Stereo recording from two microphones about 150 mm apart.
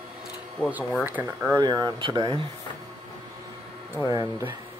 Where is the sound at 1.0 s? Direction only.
15° right (ahead or behind).